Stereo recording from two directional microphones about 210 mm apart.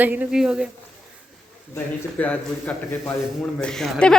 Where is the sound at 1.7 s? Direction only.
5° left (ahead or behind).